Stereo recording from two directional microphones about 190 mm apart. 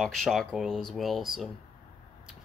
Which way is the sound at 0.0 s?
Centre (ahead or behind).